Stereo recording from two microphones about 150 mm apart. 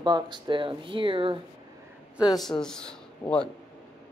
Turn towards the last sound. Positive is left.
turn(degrees=5)  # may be behind; listen again after turning